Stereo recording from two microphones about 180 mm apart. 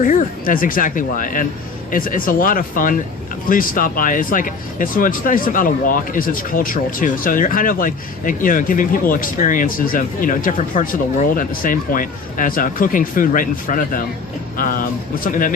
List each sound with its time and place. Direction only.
0.0 s speech: 45° left (ahead or behind)